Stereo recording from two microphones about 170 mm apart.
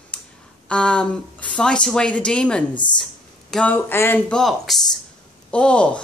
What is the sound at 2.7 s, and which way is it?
Speech, 25° left (ahead or behind).